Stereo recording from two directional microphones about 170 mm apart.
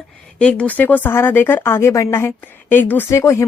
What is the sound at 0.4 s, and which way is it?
Speech, 5° left (ahead or behind).